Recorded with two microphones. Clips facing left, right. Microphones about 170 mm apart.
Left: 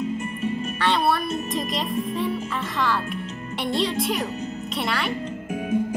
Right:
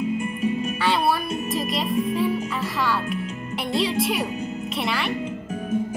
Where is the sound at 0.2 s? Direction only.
10° right (ahead or behind).